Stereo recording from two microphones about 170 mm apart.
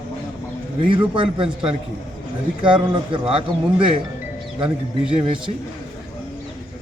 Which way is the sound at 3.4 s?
30° right (ahead or behind).